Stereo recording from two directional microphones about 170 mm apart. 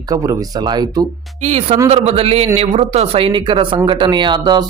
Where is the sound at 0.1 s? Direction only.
20° right (ahead or behind).